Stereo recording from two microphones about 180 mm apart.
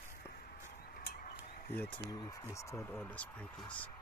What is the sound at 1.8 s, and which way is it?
Speech, 10° left (ahead or behind).